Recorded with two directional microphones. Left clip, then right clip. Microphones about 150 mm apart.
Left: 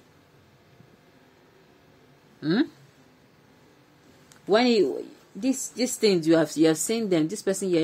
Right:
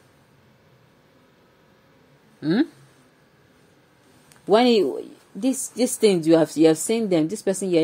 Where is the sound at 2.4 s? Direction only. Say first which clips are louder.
Right 3 dB; 15° right (ahead or behind).